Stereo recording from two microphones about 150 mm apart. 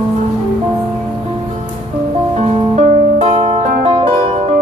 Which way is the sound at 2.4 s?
45° right (ahead or behind).